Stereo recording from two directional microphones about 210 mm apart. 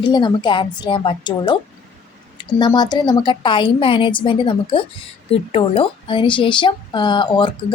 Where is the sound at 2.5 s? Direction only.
20° left (ahead or behind).